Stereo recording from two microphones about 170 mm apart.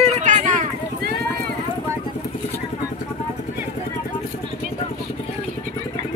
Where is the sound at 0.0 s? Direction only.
45° right (ahead or behind).